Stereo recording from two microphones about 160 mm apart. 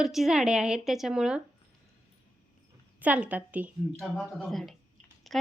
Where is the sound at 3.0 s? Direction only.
10° right (ahead or behind).